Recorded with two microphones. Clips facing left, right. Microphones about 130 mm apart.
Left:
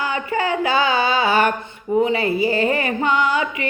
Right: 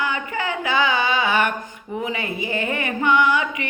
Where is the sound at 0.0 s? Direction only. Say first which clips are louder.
Left 3 dB; 30° left (ahead or behind).